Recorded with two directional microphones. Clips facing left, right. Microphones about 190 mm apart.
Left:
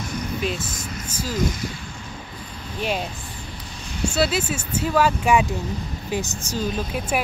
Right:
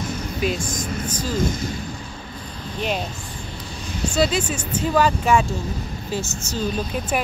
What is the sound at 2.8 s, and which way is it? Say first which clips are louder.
Speech: even; 5° left (ahead or behind).